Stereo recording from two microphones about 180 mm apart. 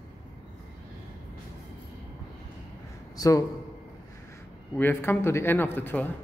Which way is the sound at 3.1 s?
20° left (ahead or behind).